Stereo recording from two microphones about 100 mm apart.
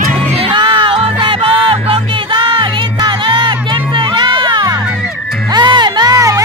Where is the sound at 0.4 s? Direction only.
55° right (ahead or behind).